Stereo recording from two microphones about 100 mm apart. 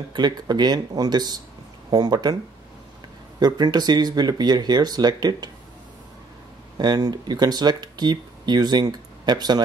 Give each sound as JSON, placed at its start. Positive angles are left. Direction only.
{"t": 0.1, "sound": "speech", "side_deg": -45}
{"t": 3.3, "sound": "speech", "side_deg": -45}
{"t": 6.8, "sound": "speech", "side_deg": -45}